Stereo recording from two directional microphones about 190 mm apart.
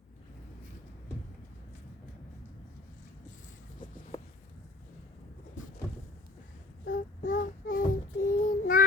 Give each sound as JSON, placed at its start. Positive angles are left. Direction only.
{"t": 6.8, "sound": "child singing", "side_deg": 50}